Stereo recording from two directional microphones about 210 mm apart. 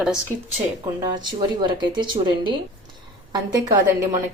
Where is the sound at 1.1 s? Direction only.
20° right (ahead or behind).